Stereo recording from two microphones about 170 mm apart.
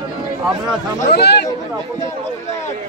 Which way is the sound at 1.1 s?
75° left (ahead or behind).